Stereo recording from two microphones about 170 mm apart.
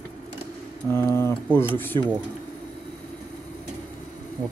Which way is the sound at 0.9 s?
15° left (ahead or behind).